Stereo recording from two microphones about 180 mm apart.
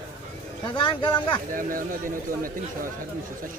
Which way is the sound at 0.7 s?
25° left (ahead or behind).